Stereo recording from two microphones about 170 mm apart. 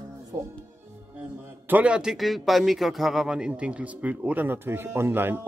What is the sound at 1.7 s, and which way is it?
A man's voice, 5° right (ahead or behind).